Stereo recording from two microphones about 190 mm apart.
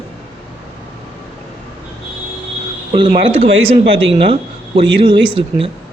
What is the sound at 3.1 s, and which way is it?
Speech, 35° right (ahead or behind).